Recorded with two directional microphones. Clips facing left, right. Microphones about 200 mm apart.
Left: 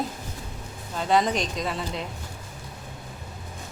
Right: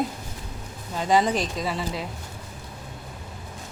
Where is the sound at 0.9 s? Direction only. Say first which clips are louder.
Right 1 dB; 10° right (ahead or behind).